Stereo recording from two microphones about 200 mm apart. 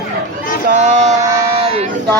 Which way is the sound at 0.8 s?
35° right (ahead or behind).